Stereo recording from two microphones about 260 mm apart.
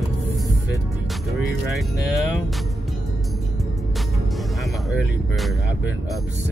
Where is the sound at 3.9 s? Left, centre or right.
Centre.